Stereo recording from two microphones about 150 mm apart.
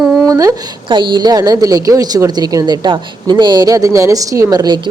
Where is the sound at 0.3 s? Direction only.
20° right (ahead or behind).